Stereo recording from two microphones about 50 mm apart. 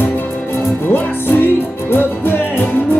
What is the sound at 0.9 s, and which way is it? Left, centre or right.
Music, left.